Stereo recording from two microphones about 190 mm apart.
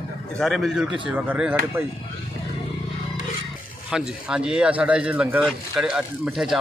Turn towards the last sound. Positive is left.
turn(degrees=0)  # may be behind; listen again after turning